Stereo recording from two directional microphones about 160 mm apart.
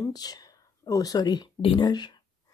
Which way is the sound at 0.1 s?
25° left (ahead or behind).